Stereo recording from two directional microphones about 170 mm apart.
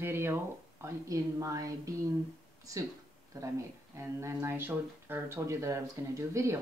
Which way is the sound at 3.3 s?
20° right (ahead or behind).